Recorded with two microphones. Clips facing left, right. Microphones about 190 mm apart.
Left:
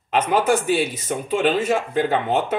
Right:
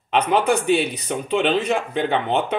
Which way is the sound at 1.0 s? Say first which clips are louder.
Even; 5° left (ahead or behind).